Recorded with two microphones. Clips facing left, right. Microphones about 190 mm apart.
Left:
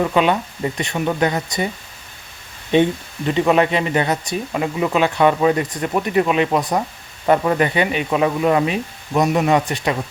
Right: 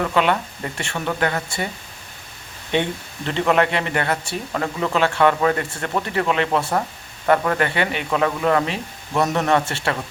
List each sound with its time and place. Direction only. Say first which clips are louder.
0.0 s speech: left 3 dB; 15° left (ahead or behind)
3.2 s speech: left 3 dB; 15° left (ahead or behind)